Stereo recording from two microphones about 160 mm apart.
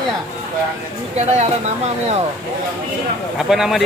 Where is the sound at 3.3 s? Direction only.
5° right (ahead or behind).